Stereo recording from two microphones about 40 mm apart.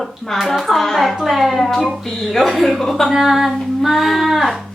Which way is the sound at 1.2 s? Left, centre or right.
Centre.